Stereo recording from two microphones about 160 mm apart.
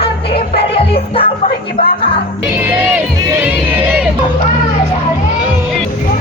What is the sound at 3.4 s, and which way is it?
Crowd, 15° right (ahead or behind).